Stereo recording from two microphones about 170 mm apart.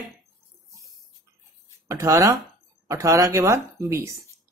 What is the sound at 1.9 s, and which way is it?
Speech, 15° right (ahead or behind).